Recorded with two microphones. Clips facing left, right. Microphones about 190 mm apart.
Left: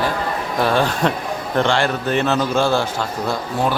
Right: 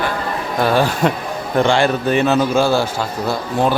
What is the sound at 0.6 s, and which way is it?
A man's voice, 5° right (ahead or behind).